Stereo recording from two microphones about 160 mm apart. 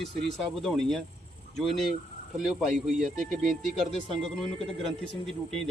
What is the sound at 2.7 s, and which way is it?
Speech, 55° right (ahead or behind).